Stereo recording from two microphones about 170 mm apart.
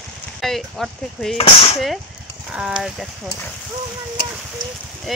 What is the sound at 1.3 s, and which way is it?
Speech, 35° left (ahead or behind).